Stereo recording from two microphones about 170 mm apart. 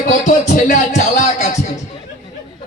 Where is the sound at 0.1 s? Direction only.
45° left (ahead or behind).